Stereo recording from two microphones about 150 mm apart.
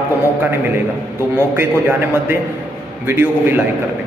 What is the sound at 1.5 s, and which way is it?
A man's voice, 15° right (ahead or behind).